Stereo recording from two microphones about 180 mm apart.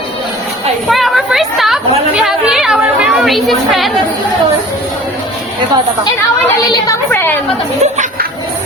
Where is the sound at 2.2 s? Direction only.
Centre (ahead or behind).